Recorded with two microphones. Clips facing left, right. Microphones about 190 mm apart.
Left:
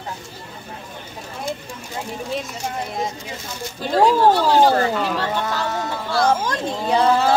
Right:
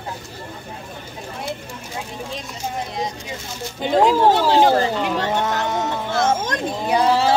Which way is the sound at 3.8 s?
20° right (ahead or behind).